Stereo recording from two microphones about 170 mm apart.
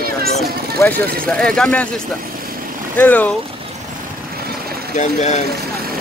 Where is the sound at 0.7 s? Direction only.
10° left (ahead or behind).